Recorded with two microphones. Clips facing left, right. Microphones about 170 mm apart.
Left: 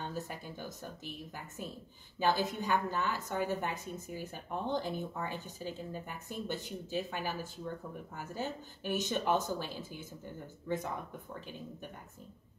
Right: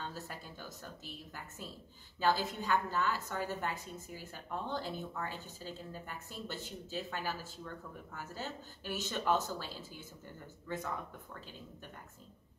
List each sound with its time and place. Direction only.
0.0 s speech: 15° left (ahead or behind)
2.1 s a woman's voice: 15° left (ahead or behind)